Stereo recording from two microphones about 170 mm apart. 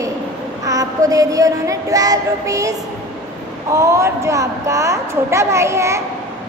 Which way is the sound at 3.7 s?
15° right (ahead or behind).